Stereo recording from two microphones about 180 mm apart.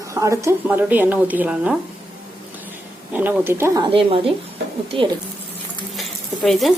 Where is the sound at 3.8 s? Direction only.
30° right (ahead or behind).